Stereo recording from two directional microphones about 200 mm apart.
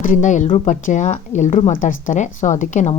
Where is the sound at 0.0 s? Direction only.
40° left (ahead or behind).